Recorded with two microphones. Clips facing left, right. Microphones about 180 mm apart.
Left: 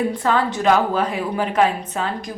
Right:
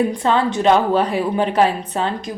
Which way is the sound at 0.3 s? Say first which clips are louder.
Right 2 dB; 25° right (ahead or behind).